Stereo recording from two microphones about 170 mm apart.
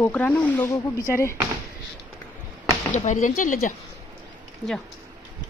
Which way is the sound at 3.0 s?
50° left (ahead or behind).